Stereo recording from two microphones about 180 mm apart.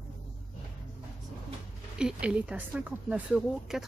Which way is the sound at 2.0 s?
5° right (ahead or behind).